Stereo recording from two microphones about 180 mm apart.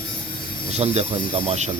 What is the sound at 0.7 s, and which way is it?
Speech, 35° right (ahead or behind).